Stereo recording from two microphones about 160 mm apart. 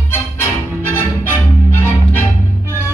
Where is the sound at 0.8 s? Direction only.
15° left (ahead or behind).